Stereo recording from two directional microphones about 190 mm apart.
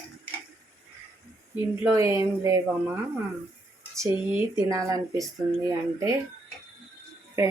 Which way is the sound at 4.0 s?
15° right (ahead or behind).